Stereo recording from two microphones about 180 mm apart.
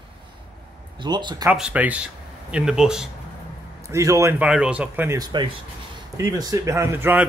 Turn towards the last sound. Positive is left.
turn(degrees=-10)  # may be behind; listen again after turning